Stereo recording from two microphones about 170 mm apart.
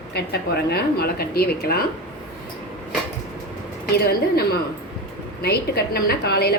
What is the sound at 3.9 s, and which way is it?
A woman's voice, 65° left (ahead or behind).